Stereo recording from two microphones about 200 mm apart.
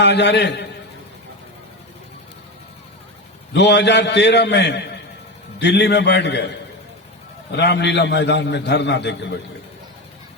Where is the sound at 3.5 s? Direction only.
60° left (ahead or behind).